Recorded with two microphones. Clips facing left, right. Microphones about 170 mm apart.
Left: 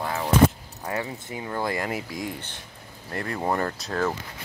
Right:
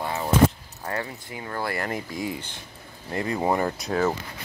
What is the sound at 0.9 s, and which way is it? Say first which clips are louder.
Speech: left 1 dB; 20° left (ahead or behind).